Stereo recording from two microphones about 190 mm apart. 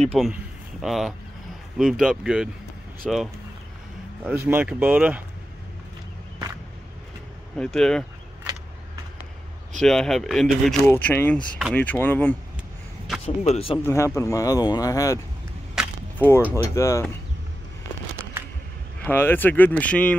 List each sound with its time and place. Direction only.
0.0 s speech: centre (ahead or behind)
4.5 s speech: 10° right (ahead or behind)
7.5 s speech: 5° left (ahead or behind)
9.8 s speech: centre (ahead or behind)
13.2 s speech: 35° left (ahead or behind)
13.8 s speech: 15° left (ahead or behind)
15.8 s a sound: 5° right (ahead or behind)
16.2 s speech: 10° left (ahead or behind)
19.0 s speech: 10° left (ahead or behind)